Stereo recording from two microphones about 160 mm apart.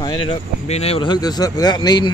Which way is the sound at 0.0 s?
25° left (ahead or behind).